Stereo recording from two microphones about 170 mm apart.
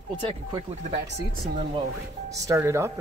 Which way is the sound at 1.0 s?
85° right.